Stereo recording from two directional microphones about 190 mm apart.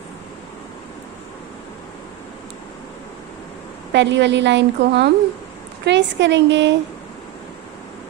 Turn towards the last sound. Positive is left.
turn(degrees=-70)  # may be behind; listen again after turning